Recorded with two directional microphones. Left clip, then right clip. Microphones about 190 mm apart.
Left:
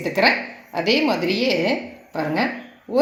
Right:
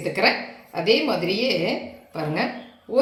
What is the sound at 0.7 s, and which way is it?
Speech, 40° left (ahead or behind).